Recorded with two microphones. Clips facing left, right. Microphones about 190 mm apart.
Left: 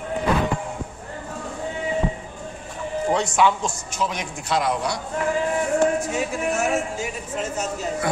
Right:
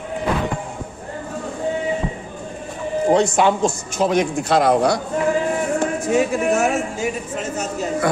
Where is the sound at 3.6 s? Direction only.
30° right (ahead or behind).